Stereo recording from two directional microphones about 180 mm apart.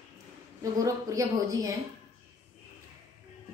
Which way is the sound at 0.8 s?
20° right (ahead or behind).